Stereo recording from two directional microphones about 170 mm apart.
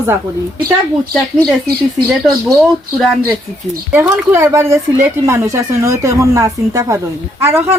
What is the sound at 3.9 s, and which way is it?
Speech, 10° right (ahead or behind).